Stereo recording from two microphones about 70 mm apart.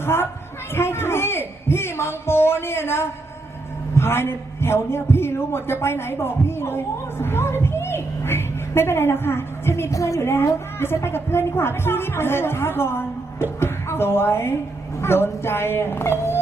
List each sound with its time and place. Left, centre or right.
0.0 s a woman's voice: left